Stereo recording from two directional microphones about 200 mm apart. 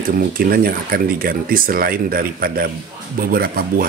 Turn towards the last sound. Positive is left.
turn(degrees=-45)  # may be behind; listen again after turning